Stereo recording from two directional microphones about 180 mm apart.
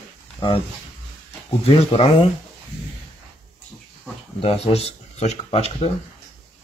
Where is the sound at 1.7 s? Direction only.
35° left (ahead or behind).